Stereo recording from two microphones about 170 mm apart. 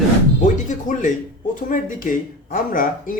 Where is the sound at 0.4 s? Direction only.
50° left (ahead or behind).